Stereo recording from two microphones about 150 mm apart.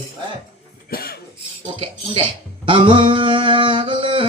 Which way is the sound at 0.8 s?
85° left.